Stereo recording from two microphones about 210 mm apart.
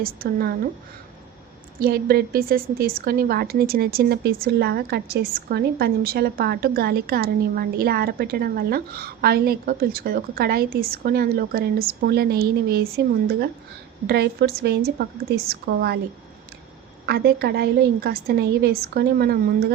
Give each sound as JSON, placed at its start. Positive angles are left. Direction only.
{"t": 0.0, "sound": "a woman's voice", "side_deg": -45}
{"t": 1.8, "sound": "a woman's voice", "side_deg": -45}
{"t": 17.1, "sound": "a woman's voice", "side_deg": -50}